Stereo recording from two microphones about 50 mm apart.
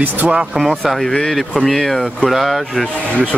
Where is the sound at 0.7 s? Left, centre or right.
Centre.